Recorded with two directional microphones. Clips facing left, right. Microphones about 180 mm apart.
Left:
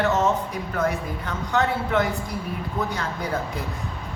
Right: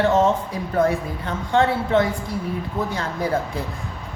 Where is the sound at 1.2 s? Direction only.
30° right (ahead or behind).